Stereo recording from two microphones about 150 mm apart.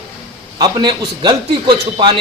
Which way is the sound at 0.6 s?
30° right (ahead or behind).